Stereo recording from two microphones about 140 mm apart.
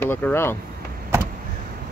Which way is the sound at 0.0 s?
15° left (ahead or behind).